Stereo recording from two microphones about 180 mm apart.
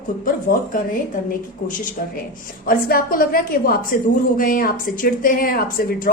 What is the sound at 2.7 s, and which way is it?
Speech, 50° left (ahead or behind).